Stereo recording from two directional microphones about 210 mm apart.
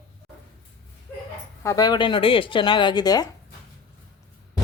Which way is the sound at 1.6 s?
15° left (ahead or behind).